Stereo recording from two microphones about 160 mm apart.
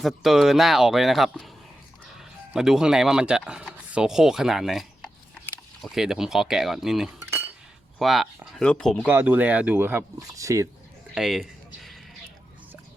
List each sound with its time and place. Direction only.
0.0 s speech: centre (ahead or behind)
7.2 s cutlery: 15° right (ahead or behind)
7.9 s speech: centre (ahead or behind)
9.0 s speech: 10° right (ahead or behind)
11.1 s a sound: centre (ahead or behind)